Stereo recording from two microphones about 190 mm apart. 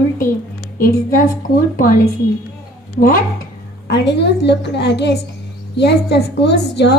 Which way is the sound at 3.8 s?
65° left (ahead or behind).